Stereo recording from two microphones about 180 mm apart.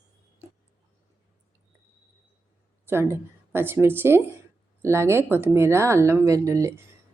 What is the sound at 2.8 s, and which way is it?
Speech, 15° right (ahead or behind).